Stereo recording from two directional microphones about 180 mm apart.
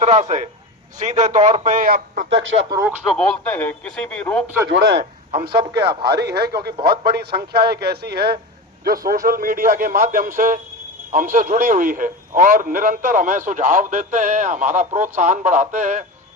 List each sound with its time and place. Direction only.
0.0 s a man's voice: 40° right (ahead or behind)
2.3 s speech: 90° right
2.6 s speech: 20° right (ahead or behind)
3.2 s speech: 10° left (ahead or behind)
4.4 s a man's voice: 15° right (ahead or behind)
4.7 s a man's voice: 80° right
5.3 s a man's voice: 35° right (ahead or behind)
6.1 s a man's voice: 65° right (ahead or behind); by 16.0 s 45° right (ahead or behind)